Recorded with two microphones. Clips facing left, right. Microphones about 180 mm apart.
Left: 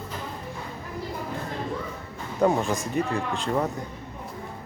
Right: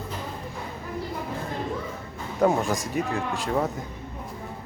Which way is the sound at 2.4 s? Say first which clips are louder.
Even; centre (ahead or behind).